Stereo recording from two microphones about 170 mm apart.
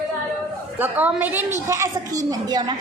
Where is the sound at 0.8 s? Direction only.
10° right (ahead or behind).